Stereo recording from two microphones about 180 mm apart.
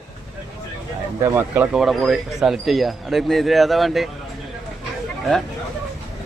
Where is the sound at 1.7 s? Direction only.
Centre (ahead or behind).